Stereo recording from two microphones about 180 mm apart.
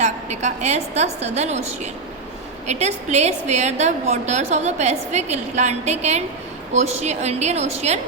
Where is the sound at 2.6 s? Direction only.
40° right (ahead or behind).